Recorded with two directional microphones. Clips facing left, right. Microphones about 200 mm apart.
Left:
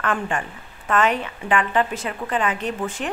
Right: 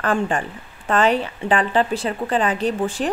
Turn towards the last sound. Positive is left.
turn(degrees=-35)  # may be behind; listen again after turning